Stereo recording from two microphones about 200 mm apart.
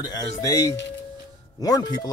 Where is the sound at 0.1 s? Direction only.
20° left (ahead or behind).